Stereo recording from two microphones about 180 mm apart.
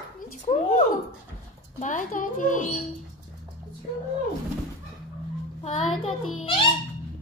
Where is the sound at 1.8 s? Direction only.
45° left (ahead or behind).